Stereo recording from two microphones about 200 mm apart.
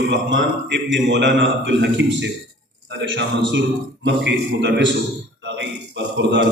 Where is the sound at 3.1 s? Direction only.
65° right (ahead or behind).